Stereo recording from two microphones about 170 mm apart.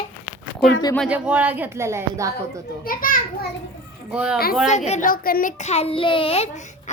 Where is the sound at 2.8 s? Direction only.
55° left (ahead or behind).